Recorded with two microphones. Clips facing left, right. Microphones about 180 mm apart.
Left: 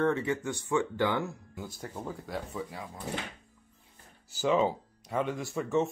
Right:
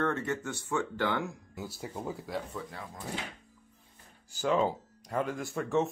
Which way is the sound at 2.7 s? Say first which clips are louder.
Left 2 dB; 10° left (ahead or behind).